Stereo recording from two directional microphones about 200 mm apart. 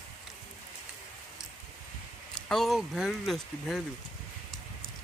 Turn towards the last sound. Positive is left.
turn(degrees=0)  # may be behind; listen again after turning